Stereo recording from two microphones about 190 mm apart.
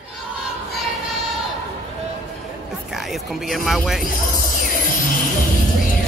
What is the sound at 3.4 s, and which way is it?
Speech, centre (ahead or behind).